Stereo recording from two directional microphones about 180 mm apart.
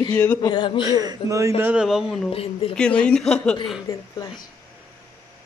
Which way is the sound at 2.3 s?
30° left (ahead or behind).